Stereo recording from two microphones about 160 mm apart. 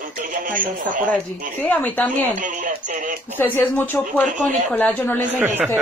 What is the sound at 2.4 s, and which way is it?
Speech, 50° right (ahead or behind).